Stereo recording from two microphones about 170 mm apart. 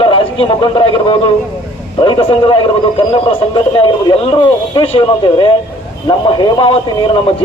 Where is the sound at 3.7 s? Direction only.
25° left (ahead or behind).